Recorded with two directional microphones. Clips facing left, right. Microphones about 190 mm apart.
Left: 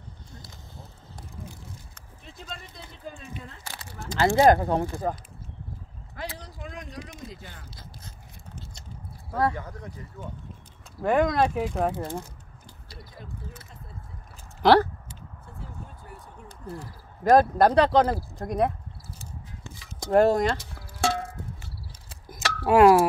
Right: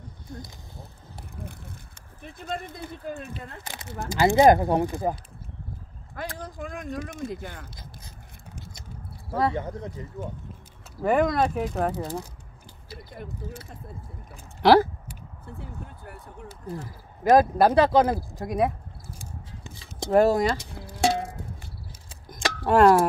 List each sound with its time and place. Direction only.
1.3 s a sound: 60° right (ahead or behind)
2.2 s speech: 55° right (ahead or behind)
3.6 s speech: 15° right (ahead or behind)
6.3 s speech: 45° right (ahead or behind)
9.3 s speech: 20° right (ahead or behind)
11.0 s speech: centre (ahead or behind)
14.6 s a sound: 5° right (ahead or behind)
17.2 s speech: 5° right (ahead or behind)
20.1 s speech: 5° right (ahead or behind)
20.5 s music: 15° right (ahead or behind)
22.7 s speech: 5° left (ahead or behind)